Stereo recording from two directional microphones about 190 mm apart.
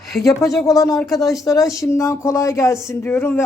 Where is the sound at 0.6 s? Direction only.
20° left (ahead or behind).